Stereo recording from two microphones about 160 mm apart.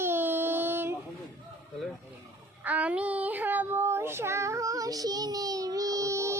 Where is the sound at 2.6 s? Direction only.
10° right (ahead or behind).